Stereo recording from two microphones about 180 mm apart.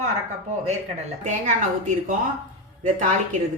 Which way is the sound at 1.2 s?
45° right (ahead or behind).